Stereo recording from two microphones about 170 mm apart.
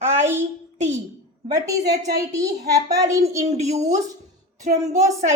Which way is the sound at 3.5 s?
40° right (ahead or behind).